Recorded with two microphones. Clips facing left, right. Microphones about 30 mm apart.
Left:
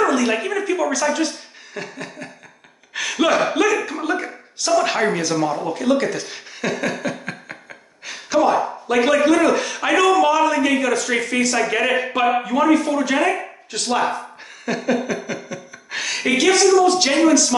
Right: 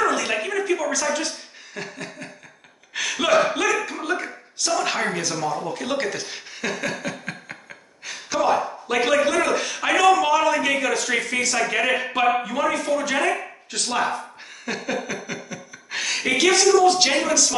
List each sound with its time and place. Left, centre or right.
0.0 s speech: centre
2.9 s a sound: centre
5.3 s speech: centre
5.8 s speech: centre
8.1 s gasp: centre
8.8 s speech: centre